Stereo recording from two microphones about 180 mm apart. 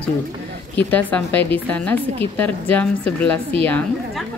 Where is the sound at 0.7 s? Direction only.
10° left (ahead or behind).